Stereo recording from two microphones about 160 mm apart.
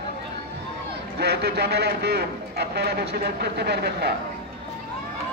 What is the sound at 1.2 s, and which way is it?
A man's voice, 85° right.